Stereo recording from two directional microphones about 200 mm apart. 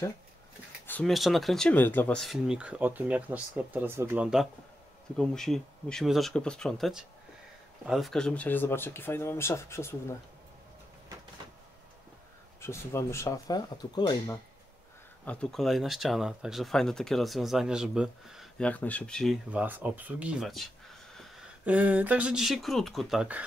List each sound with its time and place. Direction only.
0.8 s speech: 5° left (ahead or behind)
12.5 s speech: 15° left (ahead or behind)
15.2 s speech: centre (ahead or behind)